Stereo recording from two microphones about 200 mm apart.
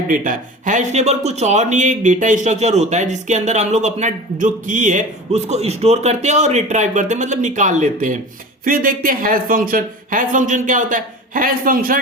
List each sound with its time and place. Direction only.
0.1 s speech: 40° right (ahead or behind)